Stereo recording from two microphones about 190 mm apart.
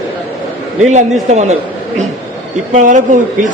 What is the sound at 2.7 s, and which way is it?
Speech, 40° right (ahead or behind).